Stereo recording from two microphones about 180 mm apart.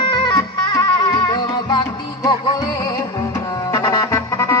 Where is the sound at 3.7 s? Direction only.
20° left (ahead or behind).